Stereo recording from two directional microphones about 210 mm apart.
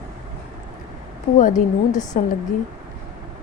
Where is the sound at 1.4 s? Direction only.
35° left (ahead or behind).